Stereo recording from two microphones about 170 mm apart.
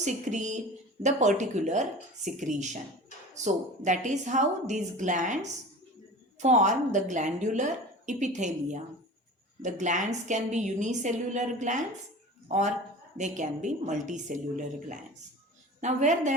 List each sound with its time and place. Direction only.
0.0 s a woman's voice: 45° right (ahead or behind)